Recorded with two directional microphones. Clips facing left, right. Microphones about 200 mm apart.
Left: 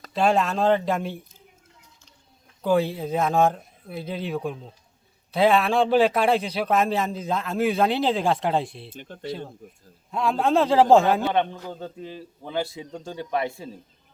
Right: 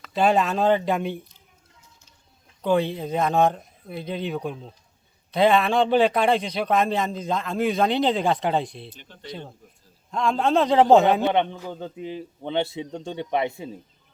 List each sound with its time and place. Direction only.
0.1 s speech: centre (ahead or behind)
2.6 s speech: 5° left (ahead or behind)
8.9 s speech: 50° left (ahead or behind)
10.1 s speech: 5° left (ahead or behind)
11.3 s a man's voice: 20° right (ahead or behind)